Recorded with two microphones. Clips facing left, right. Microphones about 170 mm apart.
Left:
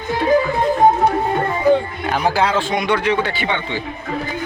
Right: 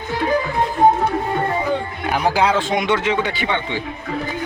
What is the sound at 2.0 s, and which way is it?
A man's voice, 10° right (ahead or behind).